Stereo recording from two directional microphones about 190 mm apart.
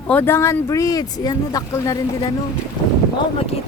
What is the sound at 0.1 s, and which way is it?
Speech, 10° left (ahead or behind).